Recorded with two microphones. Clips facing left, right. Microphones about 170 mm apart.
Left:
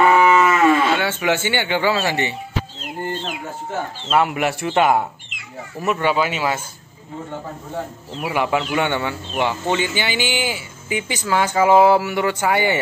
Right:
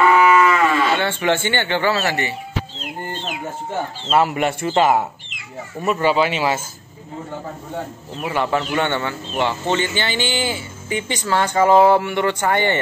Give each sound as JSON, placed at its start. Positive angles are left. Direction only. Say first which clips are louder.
{"t": 0.1, "sound": "cattle", "louder": "even", "side_deg": 25}
{"t": 0.8, "sound": "speech", "louder": "even", "side_deg": 5}
{"t": 4.1, "sound": "speech", "louder": "right 1 dB", "side_deg": 0}
{"t": 8.2, "sound": "speech", "louder": "even", "side_deg": 10}